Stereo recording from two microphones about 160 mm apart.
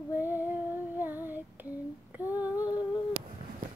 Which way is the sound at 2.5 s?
25° left (ahead or behind).